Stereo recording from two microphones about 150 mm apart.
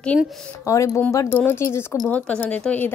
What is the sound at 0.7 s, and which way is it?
Speech, 20° left (ahead or behind).